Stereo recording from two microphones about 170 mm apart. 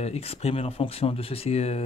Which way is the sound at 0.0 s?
35° left (ahead or behind).